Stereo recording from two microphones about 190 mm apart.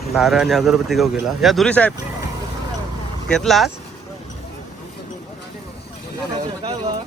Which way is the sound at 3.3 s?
Centre (ahead or behind).